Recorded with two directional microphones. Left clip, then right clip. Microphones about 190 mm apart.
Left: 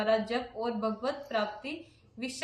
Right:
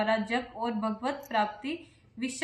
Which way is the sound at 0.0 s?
20° left (ahead or behind).